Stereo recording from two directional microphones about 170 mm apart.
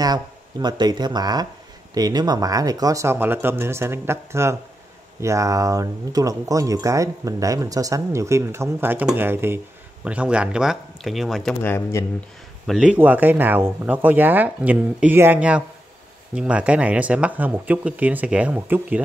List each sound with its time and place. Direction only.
0.0 s speech: 25° right (ahead or behind); by 11.5 s centre (ahead or behind)
11.6 s speech: 15° left (ahead or behind)
12.6 s speech: 5° right (ahead or behind)